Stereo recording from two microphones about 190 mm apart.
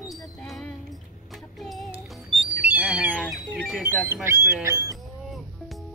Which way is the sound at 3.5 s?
Centre (ahead or behind).